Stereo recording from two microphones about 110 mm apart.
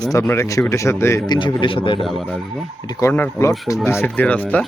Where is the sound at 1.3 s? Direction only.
45° left (ahead or behind).